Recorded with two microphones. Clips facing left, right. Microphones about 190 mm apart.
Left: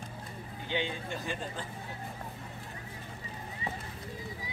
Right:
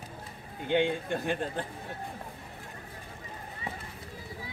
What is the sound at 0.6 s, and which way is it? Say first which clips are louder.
Speech: right 8 dB; 55° right (ahead or behind).